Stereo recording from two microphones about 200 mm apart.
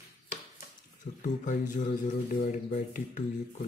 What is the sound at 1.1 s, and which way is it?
Speech, 40° left (ahead or behind).